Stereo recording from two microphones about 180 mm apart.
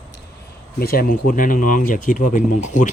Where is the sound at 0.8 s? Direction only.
55° left (ahead or behind).